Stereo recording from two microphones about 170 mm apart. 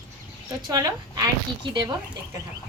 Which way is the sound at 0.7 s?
20° right (ahead or behind).